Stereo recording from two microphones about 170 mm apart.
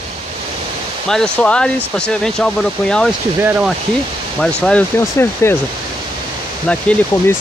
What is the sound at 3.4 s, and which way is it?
Speech, 10° right (ahead or behind).